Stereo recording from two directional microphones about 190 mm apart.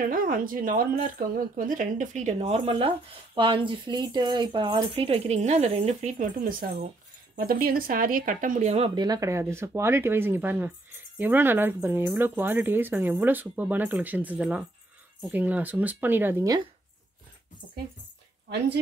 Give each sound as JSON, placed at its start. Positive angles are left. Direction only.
{"t": 0.0, "sound": "speech", "side_deg": -45}